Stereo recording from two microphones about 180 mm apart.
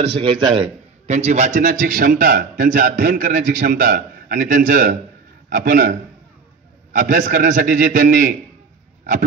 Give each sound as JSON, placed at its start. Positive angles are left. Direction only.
{"t": 0.0, "sound": "a man's voice", "side_deg": -30}
{"t": 1.0, "sound": "a man's voice", "side_deg": -40}